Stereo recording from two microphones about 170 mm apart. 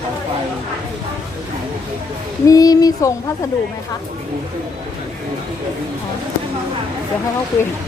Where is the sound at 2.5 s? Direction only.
20° left (ahead or behind).